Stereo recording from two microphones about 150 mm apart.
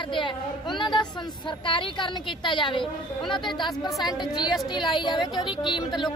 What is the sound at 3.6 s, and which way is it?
Speech, centre (ahead or behind).